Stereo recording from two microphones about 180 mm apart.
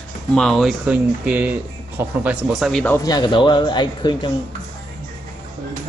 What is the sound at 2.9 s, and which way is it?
Speech, 20° left (ahead or behind).